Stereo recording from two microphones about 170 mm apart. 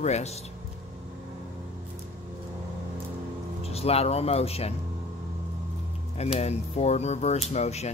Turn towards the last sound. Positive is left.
turn(degrees=40)  # may be behind; listen again after turning